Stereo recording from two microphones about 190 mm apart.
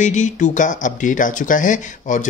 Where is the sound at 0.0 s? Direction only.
40° left (ahead or behind).